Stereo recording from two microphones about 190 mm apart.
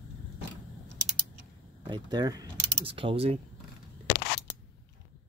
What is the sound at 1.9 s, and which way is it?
Speech, 20° right (ahead or behind).